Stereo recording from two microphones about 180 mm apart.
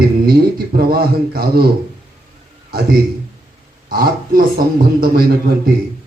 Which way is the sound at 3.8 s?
55° right (ahead or behind).